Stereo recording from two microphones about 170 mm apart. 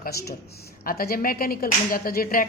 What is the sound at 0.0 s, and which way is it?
A woman's voice, 65° left (ahead or behind).